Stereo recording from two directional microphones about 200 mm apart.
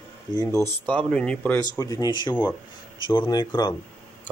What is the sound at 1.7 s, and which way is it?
Speech, 15° left (ahead or behind).